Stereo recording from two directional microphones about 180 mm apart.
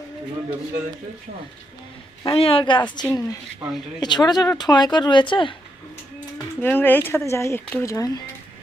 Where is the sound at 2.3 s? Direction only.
30° left (ahead or behind).